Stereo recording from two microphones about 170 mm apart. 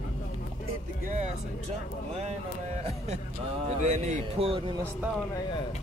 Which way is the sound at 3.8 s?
40° right (ahead or behind).